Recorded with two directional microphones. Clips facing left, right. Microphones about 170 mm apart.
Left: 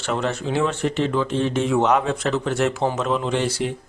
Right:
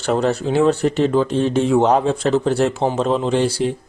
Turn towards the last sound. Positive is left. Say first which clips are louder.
# right 5 dB
turn(degrees=-30)  # may be behind; listen again after turning